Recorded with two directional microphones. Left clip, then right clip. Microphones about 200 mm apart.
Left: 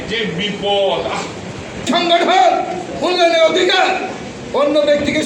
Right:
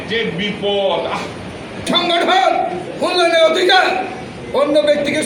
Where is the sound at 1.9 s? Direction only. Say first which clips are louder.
Left 1 dB; 20° right (ahead or behind).